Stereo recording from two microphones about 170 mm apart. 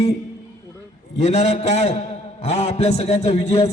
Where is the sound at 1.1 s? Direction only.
40° left (ahead or behind).